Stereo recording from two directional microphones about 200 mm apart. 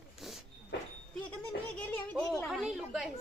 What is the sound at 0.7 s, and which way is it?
Speech, 55° left (ahead or behind).